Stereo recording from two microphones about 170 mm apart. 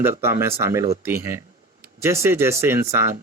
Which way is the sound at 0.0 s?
15° right (ahead or behind).